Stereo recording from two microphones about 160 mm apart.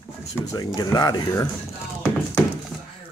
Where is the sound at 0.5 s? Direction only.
25° left (ahead or behind).